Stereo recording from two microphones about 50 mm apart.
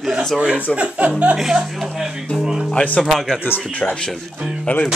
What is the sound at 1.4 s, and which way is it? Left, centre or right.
Speech, centre.